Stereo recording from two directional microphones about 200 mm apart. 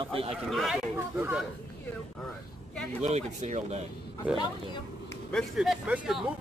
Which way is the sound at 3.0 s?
35° right (ahead or behind).